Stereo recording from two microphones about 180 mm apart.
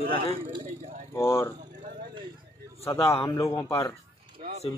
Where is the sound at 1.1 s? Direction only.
15° left (ahead or behind).